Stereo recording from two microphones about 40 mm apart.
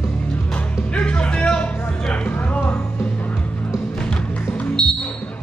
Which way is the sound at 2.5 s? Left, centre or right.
Left.